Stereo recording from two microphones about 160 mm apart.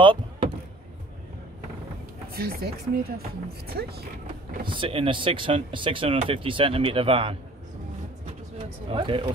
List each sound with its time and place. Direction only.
0.0 s vehicle: 30° right (ahead or behind)
2.3 s speech: 70° right (ahead or behind)
4.6 s speech: 35° right (ahead or behind)
8.9 s speech: 30° right (ahead or behind)